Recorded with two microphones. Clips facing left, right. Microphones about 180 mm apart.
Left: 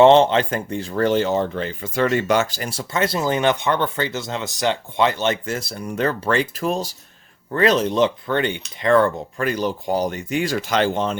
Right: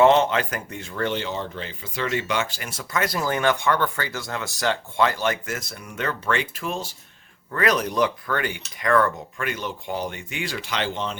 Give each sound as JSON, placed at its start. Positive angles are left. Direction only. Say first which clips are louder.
{"t": 0.0, "sound": "speech", "louder": "left 5 dB", "side_deg": 30}
{"t": 7.5, "sound": "speech", "louder": "left 5 dB", "side_deg": 25}